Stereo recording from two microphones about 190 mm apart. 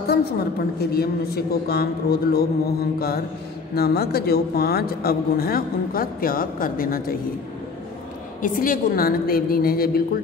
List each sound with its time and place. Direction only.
0.7 s a man's voice: 55° left (ahead or behind)
8.4 s a man's voice: 45° left (ahead or behind)